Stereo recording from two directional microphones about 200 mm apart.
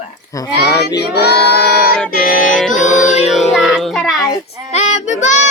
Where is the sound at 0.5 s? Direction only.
55° left (ahead or behind).